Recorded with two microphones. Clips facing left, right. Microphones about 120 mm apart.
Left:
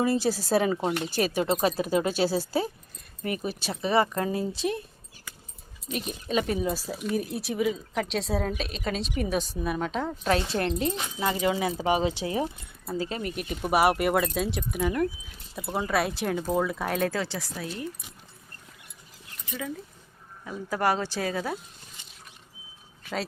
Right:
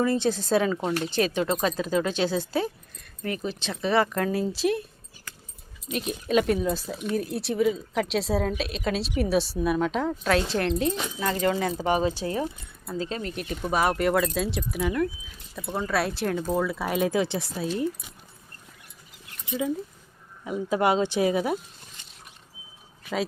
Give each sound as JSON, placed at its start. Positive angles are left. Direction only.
{"t": 0.0, "sound": "speech", "side_deg": 5}
{"t": 0.7, "sound": "speech", "side_deg": 15}
{"t": 3.2, "sound": "speech", "side_deg": 15}
{"t": 4.4, "sound": "speech", "side_deg": 0}
{"t": 5.9, "sound": "speech", "side_deg": 0}
{"t": 17.1, "sound": "speech", "side_deg": -20}
{"t": 20.4, "sound": "speech", "side_deg": -20}